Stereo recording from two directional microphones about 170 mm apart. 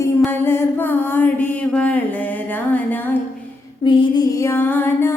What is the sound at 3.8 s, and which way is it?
Music, 30° left (ahead or behind).